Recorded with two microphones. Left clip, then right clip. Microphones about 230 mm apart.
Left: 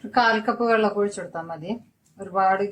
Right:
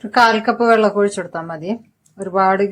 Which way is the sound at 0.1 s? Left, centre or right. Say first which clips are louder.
Right 7 dB; right.